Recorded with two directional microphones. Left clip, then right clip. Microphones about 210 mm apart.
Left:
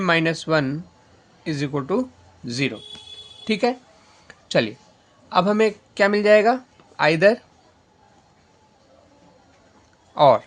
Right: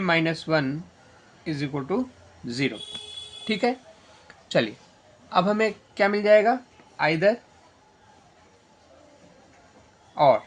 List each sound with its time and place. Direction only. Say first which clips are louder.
0.0 s speech: left 3 dB; 40° left (ahead or behind)
4.3 s a sound: left 3 dB; 30° left (ahead or behind)
5.3 s speech: left 4 dB; 30° left (ahead or behind)
10.2 s speech: left 4 dB; 40° left (ahead or behind)